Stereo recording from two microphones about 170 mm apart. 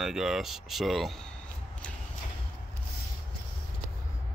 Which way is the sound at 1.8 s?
5° left (ahead or behind).